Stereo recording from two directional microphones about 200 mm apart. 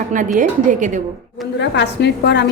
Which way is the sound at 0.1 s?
40° right (ahead or behind).